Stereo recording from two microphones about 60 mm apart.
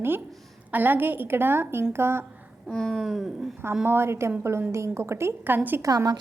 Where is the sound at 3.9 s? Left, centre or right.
Right.